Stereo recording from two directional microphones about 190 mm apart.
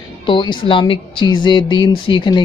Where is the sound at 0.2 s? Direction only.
25° left (ahead or behind).